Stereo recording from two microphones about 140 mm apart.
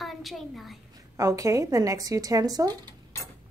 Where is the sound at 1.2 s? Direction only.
25° right (ahead or behind).